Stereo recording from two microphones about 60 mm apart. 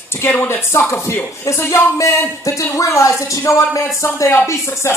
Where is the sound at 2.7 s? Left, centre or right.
Left.